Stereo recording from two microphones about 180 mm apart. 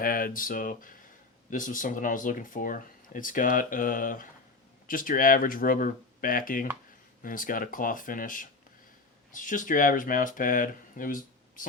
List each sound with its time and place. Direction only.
0.0 s speech: 50° left (ahead or behind)